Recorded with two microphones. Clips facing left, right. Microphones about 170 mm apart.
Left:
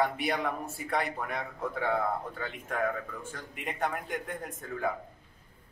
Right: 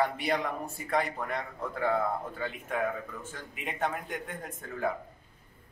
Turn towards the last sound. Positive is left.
turn(degrees=0)  # may be behind; listen again after turning